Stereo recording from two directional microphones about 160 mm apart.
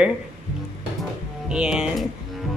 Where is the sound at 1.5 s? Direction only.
5° right (ahead or behind).